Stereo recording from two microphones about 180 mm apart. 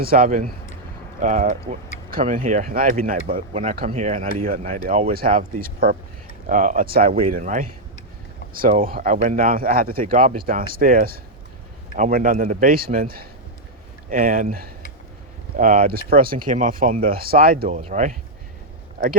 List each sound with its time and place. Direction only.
0.0 s speech: 55° right (ahead or behind)
3.5 s speech: 40° right (ahead or behind)
3.8 s speech: 50° right (ahead or behind)